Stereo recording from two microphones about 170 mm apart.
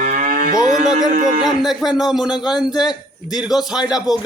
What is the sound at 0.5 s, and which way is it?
Speech, 20° left (ahead or behind).